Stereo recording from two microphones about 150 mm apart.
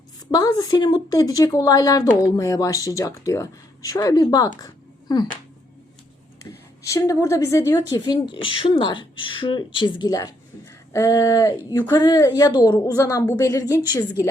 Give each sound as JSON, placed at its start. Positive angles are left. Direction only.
{"t": 0.3, "sound": "speech", "side_deg": 25}
{"t": 6.4, "sound": "a woman's voice", "side_deg": 20}